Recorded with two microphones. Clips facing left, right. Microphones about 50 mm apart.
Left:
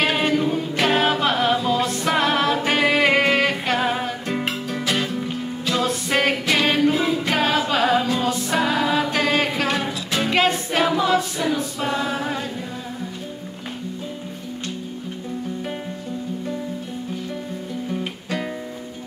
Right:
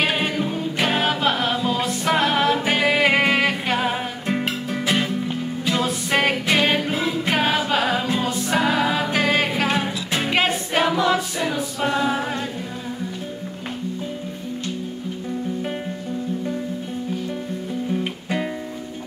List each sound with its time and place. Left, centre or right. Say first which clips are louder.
0.0 s a capella: left 2 dB; centre
4.6 s music: right 1 dB; centre
7.2 s a capella: even; centre
8.5 s music: right 1 dB; centre
11.8 s a capella: right 6 dB; centre